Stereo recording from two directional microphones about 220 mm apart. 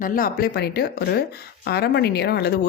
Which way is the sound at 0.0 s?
40° left (ahead or behind).